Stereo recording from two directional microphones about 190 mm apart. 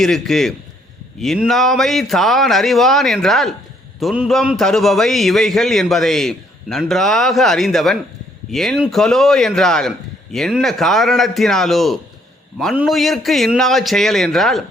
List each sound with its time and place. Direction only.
0.0 s a man's voice: centre (ahead or behind)